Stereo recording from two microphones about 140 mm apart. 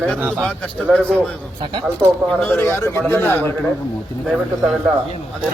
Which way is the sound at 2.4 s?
15° left (ahead or behind).